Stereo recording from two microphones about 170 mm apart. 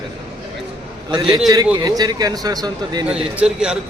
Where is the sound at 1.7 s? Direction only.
25° right (ahead or behind).